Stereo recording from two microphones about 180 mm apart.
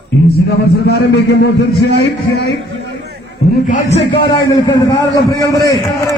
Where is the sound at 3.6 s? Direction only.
45° left (ahead or behind).